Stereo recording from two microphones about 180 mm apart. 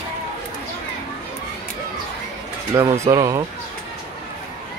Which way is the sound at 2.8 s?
20° right (ahead or behind).